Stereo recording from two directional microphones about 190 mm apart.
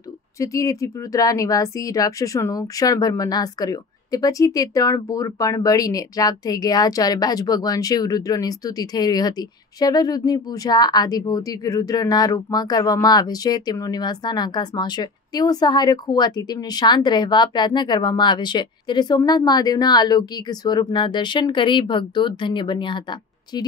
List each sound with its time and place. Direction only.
0.4 s speech: 15° left (ahead or behind)